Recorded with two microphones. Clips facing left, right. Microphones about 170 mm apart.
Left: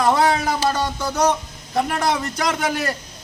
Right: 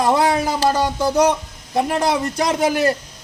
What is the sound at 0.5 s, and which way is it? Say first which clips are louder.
Speech: right 4 dB; 35° right (ahead or behind).